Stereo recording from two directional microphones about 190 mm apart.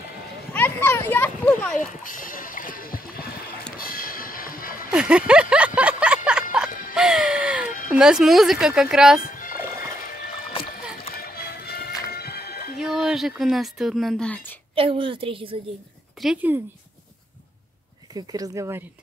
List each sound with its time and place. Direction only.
0.5 s a sound: 10° left (ahead or behind)
2.0 s a sound: 45° left (ahead or behind)
3.7 s music: 50° left (ahead or behind)
4.9 s a sound: 5° right (ahead or behind)
6.9 s music: 5° right (ahead or behind)
7.9 s speech: 5° right (ahead or behind)
9.2 s music: 45° left (ahead or behind)
9.6 s music: 15° right (ahead or behind)
11.1 s music: 55° left (ahead or behind)
12.7 s speech: centre (ahead or behind)
14.8 s a woman's voice: 30° right (ahead or behind)
16.2 s speech: 5° right (ahead or behind)
18.1 s a woman's voice: 20° right (ahead or behind)